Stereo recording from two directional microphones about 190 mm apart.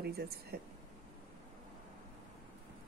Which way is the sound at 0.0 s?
55° right (ahead or behind).